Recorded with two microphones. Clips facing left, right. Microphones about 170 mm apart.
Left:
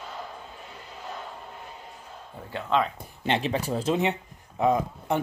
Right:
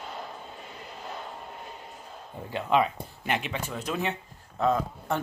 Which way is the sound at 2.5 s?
15° right (ahead or behind).